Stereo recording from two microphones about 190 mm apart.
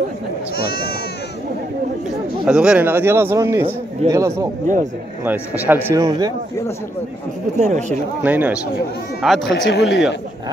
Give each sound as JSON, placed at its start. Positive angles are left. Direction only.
{"t": 2.4, "sound": "speech", "side_deg": -5}
{"t": 4.0, "sound": "speech", "side_deg": -35}
{"t": 5.2, "sound": "speech", "side_deg": -10}
{"t": 6.0, "sound": "speech", "side_deg": -20}
{"t": 7.5, "sound": "speech", "side_deg": -40}
{"t": 8.2, "sound": "speech", "side_deg": -10}
{"t": 9.5, "sound": "speech", "side_deg": 65}
{"t": 9.8, "sound": "speech", "side_deg": 0}